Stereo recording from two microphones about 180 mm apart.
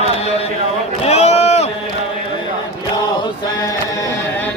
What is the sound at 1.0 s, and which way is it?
Run, 35° left (ahead or behind).